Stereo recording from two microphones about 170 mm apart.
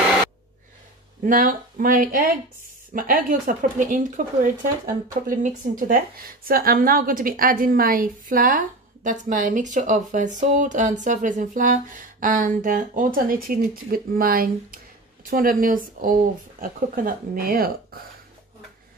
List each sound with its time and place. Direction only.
1.2 s a woman's voice: 55° right (ahead or behind)